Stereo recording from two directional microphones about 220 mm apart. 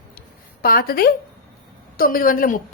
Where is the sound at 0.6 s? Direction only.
40° left (ahead or behind).